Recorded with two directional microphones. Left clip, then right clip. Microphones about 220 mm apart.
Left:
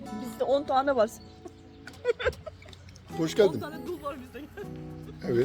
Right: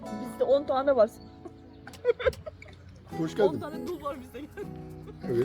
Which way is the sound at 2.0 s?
20° right (ahead or behind).